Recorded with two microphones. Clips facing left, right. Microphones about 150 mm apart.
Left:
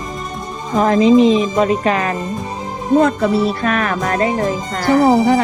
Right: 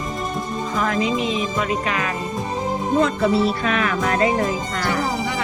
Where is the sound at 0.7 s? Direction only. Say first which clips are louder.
Left 12 dB; 35° left (ahead or behind).